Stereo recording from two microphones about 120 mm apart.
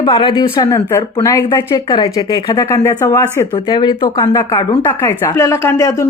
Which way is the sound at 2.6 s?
25° left (ahead or behind).